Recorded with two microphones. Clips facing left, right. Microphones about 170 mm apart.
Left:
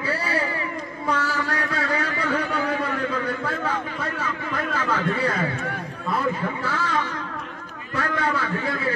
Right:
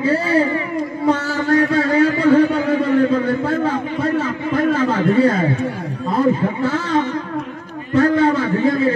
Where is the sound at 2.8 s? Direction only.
35° right (ahead or behind).